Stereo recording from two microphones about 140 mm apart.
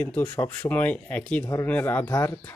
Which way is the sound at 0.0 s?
10° left (ahead or behind).